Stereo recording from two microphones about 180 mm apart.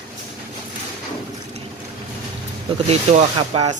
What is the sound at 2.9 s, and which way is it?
Speech, 35° right (ahead or behind).